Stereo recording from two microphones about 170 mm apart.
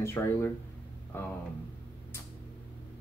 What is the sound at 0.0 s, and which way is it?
Speech, 15° left (ahead or behind).